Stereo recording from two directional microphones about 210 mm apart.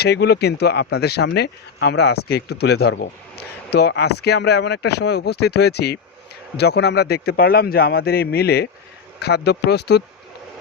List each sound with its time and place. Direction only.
0.0 s speech: 50° left (ahead or behind)